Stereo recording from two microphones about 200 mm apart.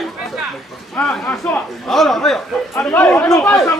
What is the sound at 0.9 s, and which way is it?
Speech, centre (ahead or behind).